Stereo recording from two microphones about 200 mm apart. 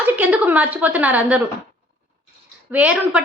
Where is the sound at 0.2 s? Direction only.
5° right (ahead or behind).